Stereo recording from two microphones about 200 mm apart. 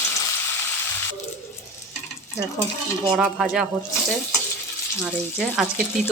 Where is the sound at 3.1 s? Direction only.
Centre (ahead or behind).